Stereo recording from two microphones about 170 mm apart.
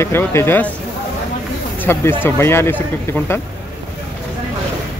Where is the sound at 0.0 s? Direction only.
15° left (ahead or behind).